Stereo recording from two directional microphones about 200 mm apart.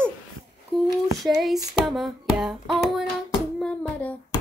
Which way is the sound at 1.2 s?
Centre (ahead or behind).